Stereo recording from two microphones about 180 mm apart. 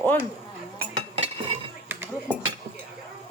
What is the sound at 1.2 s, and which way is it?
Stir, 35° right (ahead or behind).